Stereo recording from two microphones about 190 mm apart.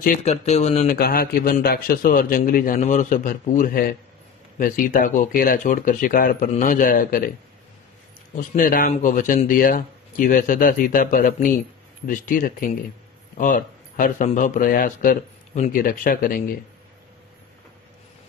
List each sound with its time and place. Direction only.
0.2 s speech: 35° left (ahead or behind)
0.9 s speech: 50° left (ahead or behind)
8.4 s speech: 45° left (ahead or behind)